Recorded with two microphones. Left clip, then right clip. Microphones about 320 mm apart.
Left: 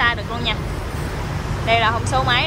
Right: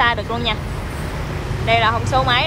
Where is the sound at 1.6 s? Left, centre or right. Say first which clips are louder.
Right 1 dB; centre.